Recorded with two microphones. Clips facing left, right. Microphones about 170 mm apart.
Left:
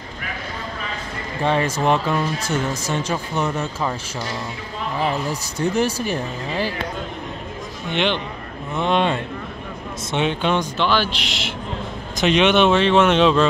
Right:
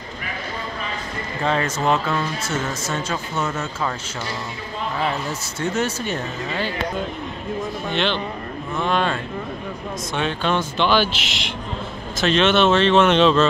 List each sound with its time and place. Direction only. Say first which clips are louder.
1.4 s speech: left 2 dB; 15° left (ahead or behind)
4.9 s speech: left 3 dB; 15° left (ahead or behind)
7.9 s speech: left 3 dB; 15° left (ahead or behind)
10.8 s speech: right 1 dB; centre (ahead or behind)
12.2 s speech: left 1 dB; 15° left (ahead or behind)